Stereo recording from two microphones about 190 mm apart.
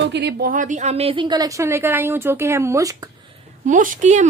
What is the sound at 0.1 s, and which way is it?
A woman's voice, 55° right (ahead or behind).